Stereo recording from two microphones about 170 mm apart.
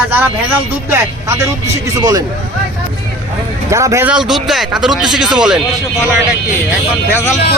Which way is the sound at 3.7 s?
15° right (ahead or behind).